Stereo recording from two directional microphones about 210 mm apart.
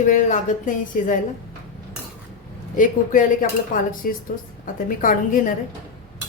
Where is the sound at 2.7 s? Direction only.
40° left (ahead or behind).